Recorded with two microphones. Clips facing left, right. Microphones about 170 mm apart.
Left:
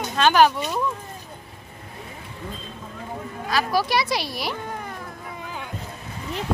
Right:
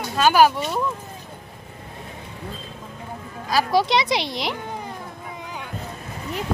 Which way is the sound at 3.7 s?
20° right (ahead or behind).